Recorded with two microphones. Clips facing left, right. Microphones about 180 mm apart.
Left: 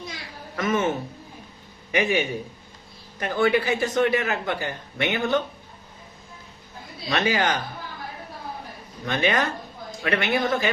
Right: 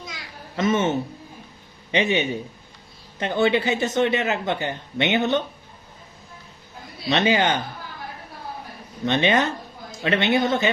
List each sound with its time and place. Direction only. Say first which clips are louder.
0.5 s a man's voice: right 3 dB; 25° right (ahead or behind)
7.1 s a man's voice: right 3 dB; 25° right (ahead or behind)
9.0 s a man's voice: right 3 dB; 25° right (ahead or behind)